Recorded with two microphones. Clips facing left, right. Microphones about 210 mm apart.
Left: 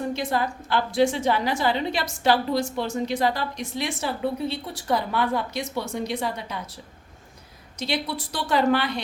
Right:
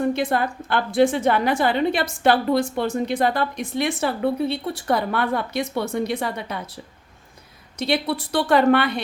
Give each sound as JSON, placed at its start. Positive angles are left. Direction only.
{"t": 0.1, "sound": "a woman's voice", "side_deg": -55}
{"t": 7.8, "sound": "a woman's voice", "side_deg": -60}